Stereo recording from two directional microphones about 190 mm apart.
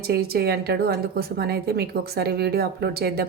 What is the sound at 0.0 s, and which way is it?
A woman's voice, 55° right (ahead or behind).